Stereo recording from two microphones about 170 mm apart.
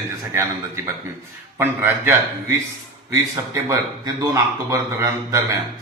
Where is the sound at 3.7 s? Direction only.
20° right (ahead or behind).